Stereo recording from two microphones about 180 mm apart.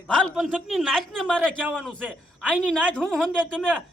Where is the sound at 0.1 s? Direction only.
Centre (ahead or behind).